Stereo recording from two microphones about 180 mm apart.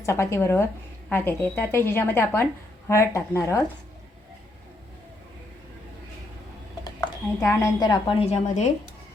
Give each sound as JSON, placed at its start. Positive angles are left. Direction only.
{"t": 0.0, "sound": "a woman's voice", "side_deg": 15}
{"t": 7.3, "sound": "a woman's voice", "side_deg": 15}